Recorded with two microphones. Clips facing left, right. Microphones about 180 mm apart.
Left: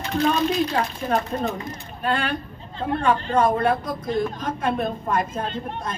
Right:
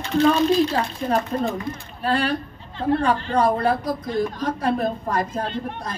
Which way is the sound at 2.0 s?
35° right (ahead or behind).